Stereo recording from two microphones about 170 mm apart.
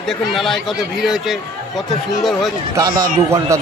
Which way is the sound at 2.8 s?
20° right (ahead or behind).